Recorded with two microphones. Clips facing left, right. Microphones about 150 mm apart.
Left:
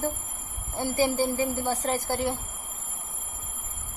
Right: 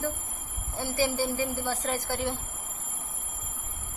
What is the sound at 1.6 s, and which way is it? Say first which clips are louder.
Speech: left 3 dB; 20° left (ahead or behind).